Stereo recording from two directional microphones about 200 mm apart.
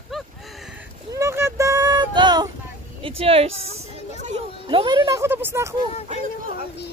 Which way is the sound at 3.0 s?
25° right (ahead or behind).